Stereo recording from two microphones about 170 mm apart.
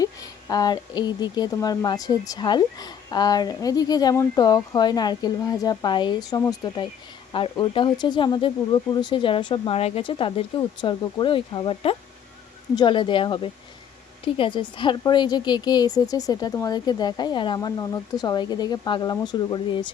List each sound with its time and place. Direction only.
0.0 s speech: 20° left (ahead or behind)